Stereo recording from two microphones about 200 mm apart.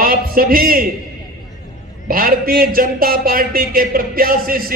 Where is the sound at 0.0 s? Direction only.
45° right (ahead or behind).